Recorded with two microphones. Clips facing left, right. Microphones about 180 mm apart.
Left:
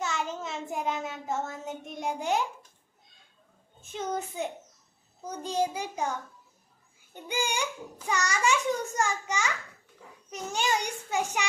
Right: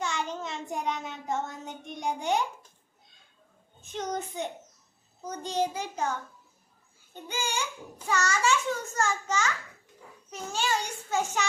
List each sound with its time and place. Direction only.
0.0 s child singing: 5° left (ahead or behind)
3.9 s a child's voice: 5° left (ahead or behind)
7.3 s a child's voice: 15° left (ahead or behind)